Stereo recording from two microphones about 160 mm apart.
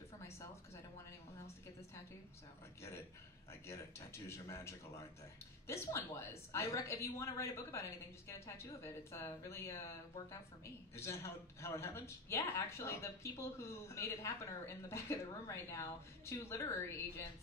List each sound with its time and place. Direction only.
3.6 s a woman's voice: 15° left (ahead or behind)